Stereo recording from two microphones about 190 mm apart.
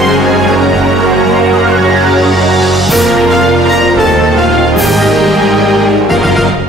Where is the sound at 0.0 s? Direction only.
Centre (ahead or behind).